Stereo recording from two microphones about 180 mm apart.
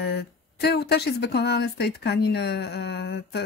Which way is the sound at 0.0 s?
65° left (ahead or behind).